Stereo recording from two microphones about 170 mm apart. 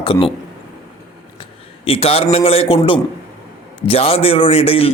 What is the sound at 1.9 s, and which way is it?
A man's voice, 35° left (ahead or behind).